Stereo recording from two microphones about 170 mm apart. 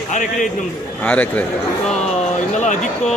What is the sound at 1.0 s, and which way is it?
Speech, 10° left (ahead or behind).